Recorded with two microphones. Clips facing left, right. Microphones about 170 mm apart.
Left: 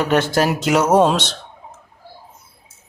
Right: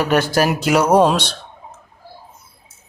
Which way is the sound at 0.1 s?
25° left (ahead or behind).